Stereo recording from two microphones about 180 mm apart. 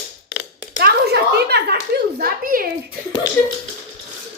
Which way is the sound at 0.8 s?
60° right (ahead or behind).